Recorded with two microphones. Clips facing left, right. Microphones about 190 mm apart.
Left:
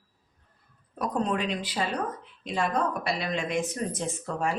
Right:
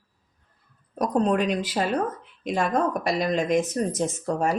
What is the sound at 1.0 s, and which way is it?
Speech, 40° right (ahead or behind).